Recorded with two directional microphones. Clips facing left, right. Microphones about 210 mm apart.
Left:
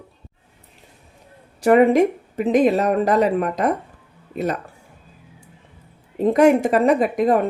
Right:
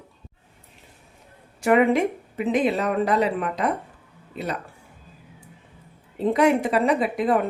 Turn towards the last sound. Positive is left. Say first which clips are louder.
# left 4 dB
turn(degrees=45)  # may be behind; listen again after turning